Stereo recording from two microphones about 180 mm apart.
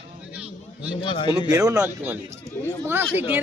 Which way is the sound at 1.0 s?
30° left (ahead or behind).